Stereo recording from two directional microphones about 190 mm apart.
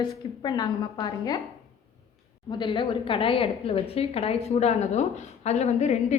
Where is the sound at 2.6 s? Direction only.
25° left (ahead or behind).